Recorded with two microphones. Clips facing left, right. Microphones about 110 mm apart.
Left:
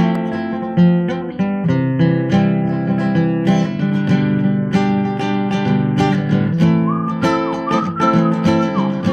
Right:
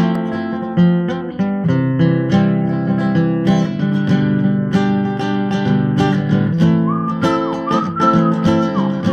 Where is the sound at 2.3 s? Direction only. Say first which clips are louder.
Right 1 dB; 20° right (ahead or behind).